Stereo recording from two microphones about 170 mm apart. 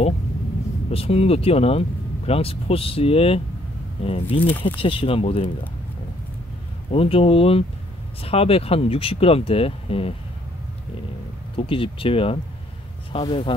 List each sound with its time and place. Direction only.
0.8 s speech: 35° left (ahead or behind)
4.5 s speech: 10° left (ahead or behind)
4.7 s speech: 30° left (ahead or behind)
6.9 s speech: 35° left (ahead or behind)
11.5 s speech: 30° left (ahead or behind)